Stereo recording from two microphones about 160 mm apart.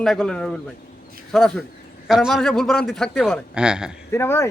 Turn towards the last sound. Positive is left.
turn(degrees=15)  # may be behind; listen again after turning